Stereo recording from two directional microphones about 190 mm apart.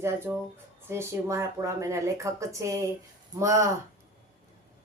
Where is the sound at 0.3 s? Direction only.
15° right (ahead or behind).